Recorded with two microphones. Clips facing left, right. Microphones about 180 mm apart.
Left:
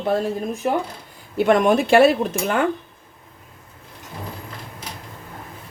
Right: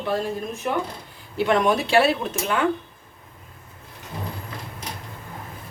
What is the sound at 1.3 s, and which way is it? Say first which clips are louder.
Speech: left 4 dB; 50° left (ahead or behind).